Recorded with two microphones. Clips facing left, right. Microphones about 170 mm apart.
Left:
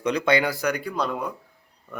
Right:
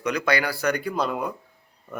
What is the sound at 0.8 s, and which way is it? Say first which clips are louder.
Speech: right 1 dB; 5° right (ahead or behind).